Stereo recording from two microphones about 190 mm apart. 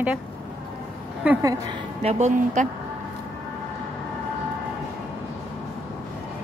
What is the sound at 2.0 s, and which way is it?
Speech, 35° right (ahead or behind).